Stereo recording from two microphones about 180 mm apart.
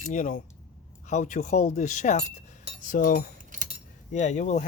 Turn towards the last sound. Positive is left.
turn(degrees=40)  # may be behind; listen again after turning